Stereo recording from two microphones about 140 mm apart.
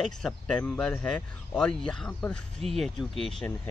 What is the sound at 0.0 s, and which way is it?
Speech, 5° left (ahead or behind).